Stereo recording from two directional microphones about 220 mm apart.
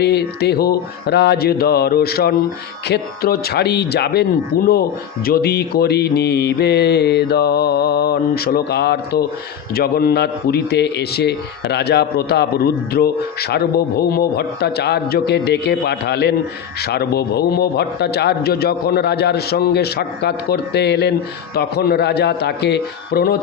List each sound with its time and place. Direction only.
0.0 s a man's voice: 50° left (ahead or behind)